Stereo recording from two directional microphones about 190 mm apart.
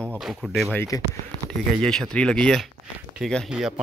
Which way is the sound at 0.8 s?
20° left (ahead or behind).